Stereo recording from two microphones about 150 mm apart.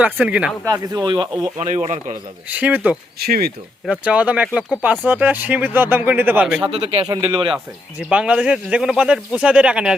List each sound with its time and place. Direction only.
0.0 s speech: 10° right (ahead or behind)
0.6 s speech: 25° right (ahead or behind)
1.5 s speech: 45° right (ahead or behind)
2.5 s speech: 10° right (ahead or behind)
3.2 s speech: 90° right
4.0 s speech: 10° right (ahead or behind)
6.6 s speech: 40° right (ahead or behind)
7.1 s speech: 30° right (ahead or behind)
7.5 s speech: 5° right (ahead or behind)